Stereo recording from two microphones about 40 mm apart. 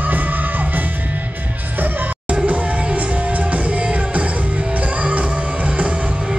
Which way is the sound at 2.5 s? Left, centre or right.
Right.